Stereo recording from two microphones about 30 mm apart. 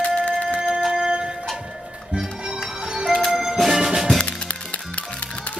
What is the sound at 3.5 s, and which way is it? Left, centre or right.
Music, centre.